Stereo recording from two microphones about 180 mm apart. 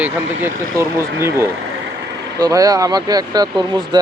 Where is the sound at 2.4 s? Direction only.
20° right (ahead or behind).